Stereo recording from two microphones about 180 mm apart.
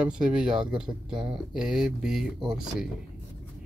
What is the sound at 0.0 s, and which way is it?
Speech, 5° right (ahead or behind).